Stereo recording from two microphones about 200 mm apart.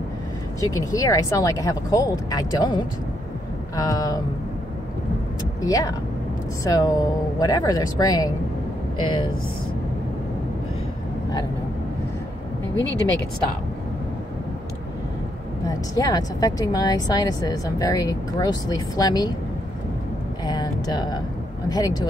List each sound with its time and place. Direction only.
0.6 s speech: 15° left (ahead or behind)
5.6 s speech: 15° left (ahead or behind)
15.6 s speech: 15° left (ahead or behind)
20.4 s speech: 20° left (ahead or behind)